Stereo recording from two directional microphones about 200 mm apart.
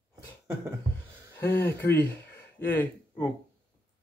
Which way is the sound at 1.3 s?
15° left (ahead or behind).